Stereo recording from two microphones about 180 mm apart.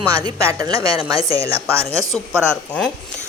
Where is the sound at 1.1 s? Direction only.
30° left (ahead or behind).